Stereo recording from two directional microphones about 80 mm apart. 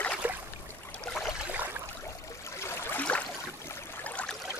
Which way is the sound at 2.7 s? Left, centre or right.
Left.